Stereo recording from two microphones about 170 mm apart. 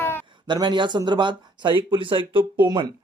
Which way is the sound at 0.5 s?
25° right (ahead or behind).